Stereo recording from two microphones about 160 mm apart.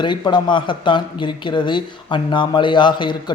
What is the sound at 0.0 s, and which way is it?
Speech, 30° left (ahead or behind).